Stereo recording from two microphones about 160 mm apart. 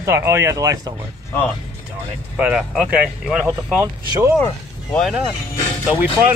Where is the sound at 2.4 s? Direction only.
5° right (ahead or behind).